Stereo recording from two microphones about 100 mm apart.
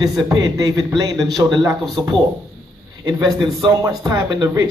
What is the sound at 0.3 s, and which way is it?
Speech, 40° right (ahead or behind).